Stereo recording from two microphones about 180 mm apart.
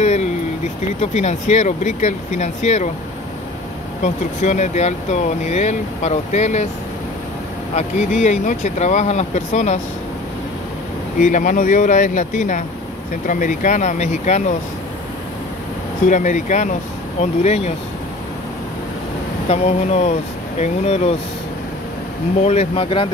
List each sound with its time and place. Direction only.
0.0 s a sound: 40° left (ahead or behind)
1.1 s speech: 40° left (ahead or behind)
4.0 s speech: 40° left (ahead or behind)
7.7 s speech: 40° left (ahead or behind)
11.1 s speech: 45° left (ahead or behind)
16.1 s speech: 45° left (ahead or behind)
19.5 s speech: 35° left (ahead or behind)
22.4 s speech: 40° left (ahead or behind)